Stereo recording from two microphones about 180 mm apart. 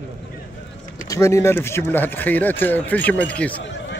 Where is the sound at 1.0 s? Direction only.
15° left (ahead or behind).